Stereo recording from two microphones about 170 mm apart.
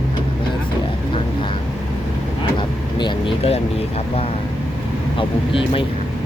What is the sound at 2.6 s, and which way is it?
Vehicle, 30° left (ahead or behind).